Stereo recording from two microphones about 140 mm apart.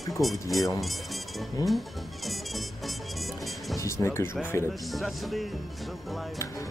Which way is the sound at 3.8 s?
20° left (ahead or behind).